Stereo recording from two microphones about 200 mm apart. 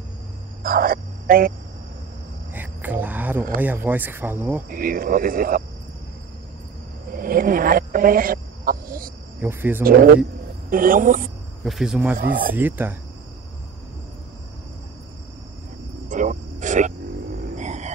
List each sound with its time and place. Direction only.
0.7 s speech: 45° right (ahead or behind)
2.5 s a sound: 10° right (ahead or behind)
3.5 s speech: 10° right (ahead or behind)
4.6 s speech: 45° right (ahead or behind)
7.2 s speech: 45° right (ahead or behind)
9.4 s speech: 10° right (ahead or behind)
9.8 s speech: 45° right (ahead or behind)
11.6 s speech: centre (ahead or behind)
12.2 s speech: 45° right (ahead or behind)
12.5 s speech: 10° right (ahead or behind)
16.1 s a sound: 40° right (ahead or behind)